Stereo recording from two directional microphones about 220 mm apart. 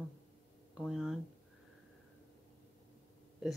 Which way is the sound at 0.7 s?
Centre (ahead or behind).